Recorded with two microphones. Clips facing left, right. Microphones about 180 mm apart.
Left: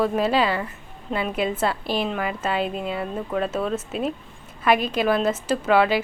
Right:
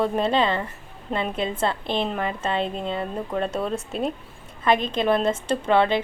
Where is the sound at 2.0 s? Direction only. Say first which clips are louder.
Left 1 dB; 5° left (ahead or behind).